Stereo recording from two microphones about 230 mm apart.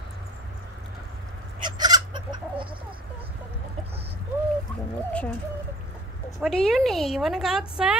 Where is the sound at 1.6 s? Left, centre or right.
Centre.